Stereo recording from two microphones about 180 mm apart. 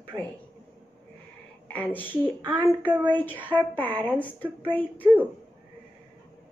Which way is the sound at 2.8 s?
25° right (ahead or behind).